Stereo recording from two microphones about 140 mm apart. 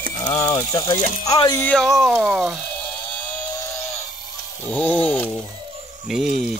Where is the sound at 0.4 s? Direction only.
25° left (ahead or behind).